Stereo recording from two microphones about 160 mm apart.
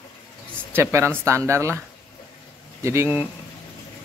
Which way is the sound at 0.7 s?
15° right (ahead or behind).